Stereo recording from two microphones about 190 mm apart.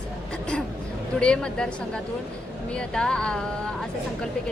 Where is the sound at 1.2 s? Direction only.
5° left (ahead or behind).